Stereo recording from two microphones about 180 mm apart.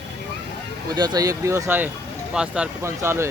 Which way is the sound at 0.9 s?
20° right (ahead or behind).